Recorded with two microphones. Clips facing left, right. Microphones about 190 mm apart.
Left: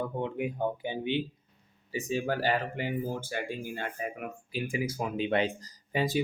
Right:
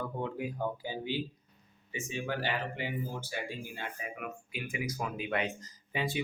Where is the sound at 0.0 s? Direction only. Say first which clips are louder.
Left 4 dB; 20° left (ahead or behind).